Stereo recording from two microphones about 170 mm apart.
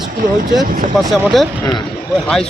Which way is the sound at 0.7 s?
55° right (ahead or behind).